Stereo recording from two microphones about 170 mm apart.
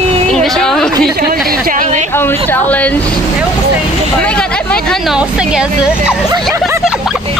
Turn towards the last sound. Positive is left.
turn(degrees=-5)  # may be behind; listen again after turning